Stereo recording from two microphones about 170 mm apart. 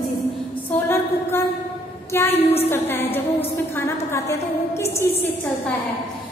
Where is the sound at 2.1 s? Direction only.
15° left (ahead or behind).